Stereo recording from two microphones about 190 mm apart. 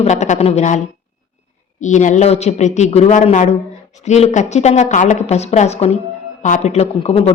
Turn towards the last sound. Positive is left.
turn(degrees=30)  # may be behind; listen again after turning